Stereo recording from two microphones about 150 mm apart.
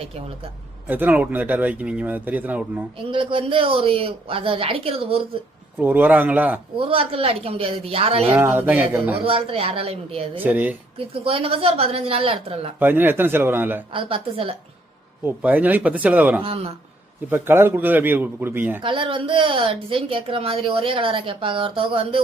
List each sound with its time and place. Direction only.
0.9 s speech: 10° right (ahead or behind)
3.0 s speech: 35° right (ahead or behind)
5.8 s speech: 10° right (ahead or behind)
6.7 s speech: 35° right (ahead or behind)
8.4 s speech: 15° right (ahead or behind)
9.2 s speech: 40° right (ahead or behind)
10.4 s speech: 10° right (ahead or behind)
10.9 s speech: 40° right (ahead or behind)
12.8 s speech: 15° right (ahead or behind)
13.9 s speech: 35° right (ahead or behind)
15.2 s speech: 10° right (ahead or behind)
16.4 s speech: 40° right (ahead or behind)
17.2 s speech: 15° right (ahead or behind)
18.8 s speech: 35° right (ahead or behind)